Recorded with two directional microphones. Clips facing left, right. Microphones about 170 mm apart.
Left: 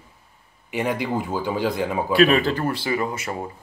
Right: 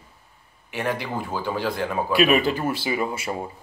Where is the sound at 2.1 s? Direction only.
15° right (ahead or behind).